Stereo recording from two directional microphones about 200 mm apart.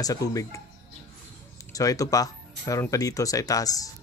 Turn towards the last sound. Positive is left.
turn(degrees=15)  # may be behind; listen again after turning